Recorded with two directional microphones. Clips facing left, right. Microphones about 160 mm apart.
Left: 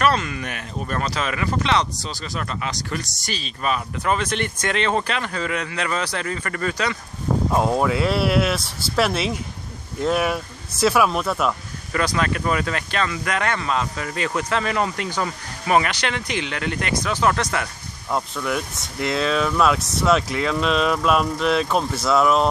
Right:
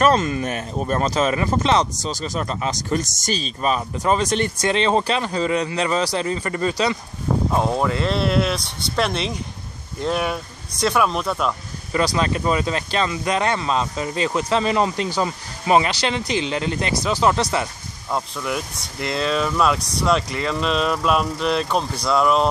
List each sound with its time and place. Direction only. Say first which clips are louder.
0.0 s speech: right 4 dB; 40° right (ahead or behind)
1.6 s speech: right 3 dB; 40° right (ahead or behind)
7.5 s speech: left 2 dB; 5° left (ahead or behind)
12.0 s speech: right 2 dB; 30° right (ahead or behind)
18.1 s speech: left 1 dB; centre (ahead or behind)